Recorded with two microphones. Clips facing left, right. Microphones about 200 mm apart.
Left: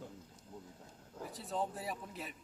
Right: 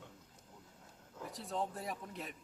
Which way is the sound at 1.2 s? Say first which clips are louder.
Left 1 dB; centre (ahead or behind).